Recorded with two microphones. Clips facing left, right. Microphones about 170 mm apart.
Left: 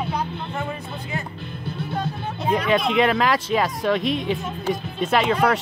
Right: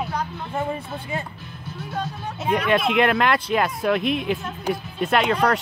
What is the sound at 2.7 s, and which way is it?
Speech, centre (ahead or behind).